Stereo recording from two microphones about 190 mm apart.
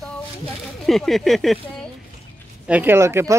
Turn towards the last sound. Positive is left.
turn(degrees=-15)  # may be behind; listen again after turning